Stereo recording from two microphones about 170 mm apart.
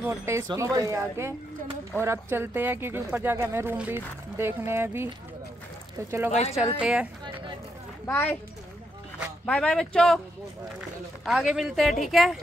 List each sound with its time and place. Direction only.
0.0 s speech: 15° right (ahead or behind)
6.8 s a sound: 5° right (ahead or behind)
8.1 s a child's voice: 10° left (ahead or behind)
9.5 s speech: 5° left (ahead or behind)
11.2 s speech: centre (ahead or behind)